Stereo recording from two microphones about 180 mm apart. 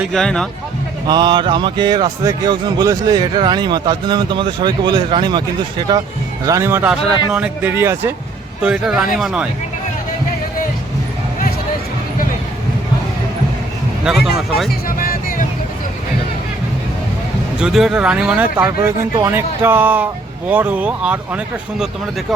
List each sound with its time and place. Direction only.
0.0 s speech: centre (ahead or behind)
1.0 s speech: 25° right (ahead or behind); by 9.5 s 5° right (ahead or behind)
14.0 s speech: centre (ahead or behind)
14.7 s a sound: 50° left (ahead or behind)
17.6 s speech: centre (ahead or behind)